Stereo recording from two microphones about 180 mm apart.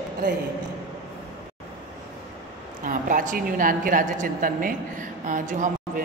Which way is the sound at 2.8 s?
50° right (ahead or behind).